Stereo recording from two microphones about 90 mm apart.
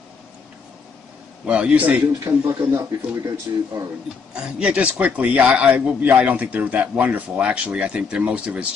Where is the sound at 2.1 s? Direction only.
40° right (ahead or behind).